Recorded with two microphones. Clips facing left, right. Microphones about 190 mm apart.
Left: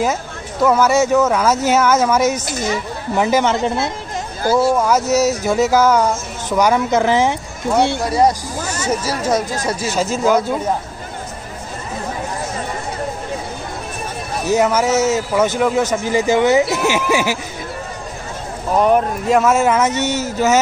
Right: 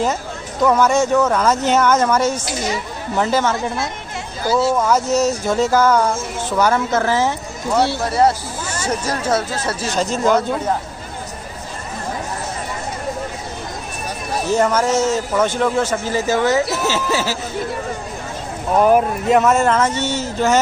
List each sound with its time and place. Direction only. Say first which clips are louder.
0.7 s speech: left 1 dB; 5° left (ahead or behind); by 3.9 s 25° left (ahead or behind)
4.7 s a man's voice: left 1 dB; 5° left (ahead or behind)
14.5 s a man's voice: left 2 dB; 10° left (ahead or behind)
18.7 s a man's voice: right 1 dB; 5° right (ahead or behind)